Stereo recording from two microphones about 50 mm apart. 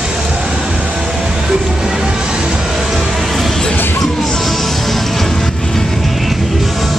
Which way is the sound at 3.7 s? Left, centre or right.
Left.